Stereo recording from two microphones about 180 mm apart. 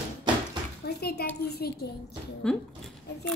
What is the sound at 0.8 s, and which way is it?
Speech, 65° left (ahead or behind).